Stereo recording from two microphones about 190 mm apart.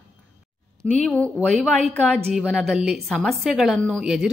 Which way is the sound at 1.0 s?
5° left (ahead or behind).